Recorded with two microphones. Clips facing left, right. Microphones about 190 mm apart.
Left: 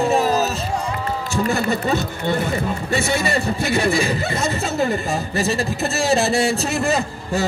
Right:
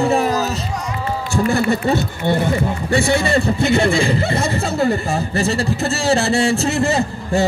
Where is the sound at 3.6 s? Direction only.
20° right (ahead or behind).